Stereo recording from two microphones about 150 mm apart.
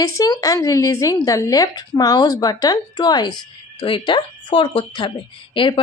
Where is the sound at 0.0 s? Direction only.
25° left (ahead or behind).